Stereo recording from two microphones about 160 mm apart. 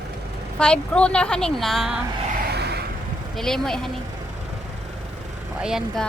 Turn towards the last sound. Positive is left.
turn(degrees=-5)  # may be behind; listen again after turning